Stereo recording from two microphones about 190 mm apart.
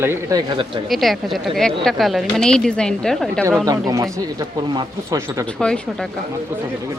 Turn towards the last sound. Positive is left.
turn(degrees=5)  # may be behind; listen again after turning